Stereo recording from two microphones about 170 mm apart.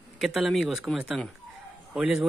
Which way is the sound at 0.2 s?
Centre (ahead or behind).